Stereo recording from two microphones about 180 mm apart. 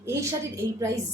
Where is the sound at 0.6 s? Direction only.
15° right (ahead or behind).